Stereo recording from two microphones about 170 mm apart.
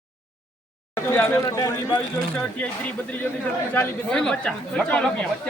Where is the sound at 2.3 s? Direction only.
10° left (ahead or behind).